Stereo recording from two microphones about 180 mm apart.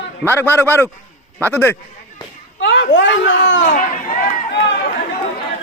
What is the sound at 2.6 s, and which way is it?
A child's voice, 80° left.